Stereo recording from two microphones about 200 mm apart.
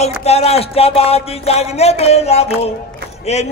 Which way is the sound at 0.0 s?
30° left (ahead or behind).